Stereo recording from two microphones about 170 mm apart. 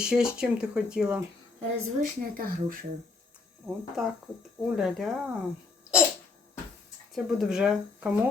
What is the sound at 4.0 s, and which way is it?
Speech, centre (ahead or behind).